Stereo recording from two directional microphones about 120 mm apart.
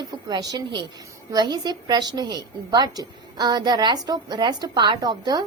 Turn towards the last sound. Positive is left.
turn(degrees=-35)  # may be behind; listen again after turning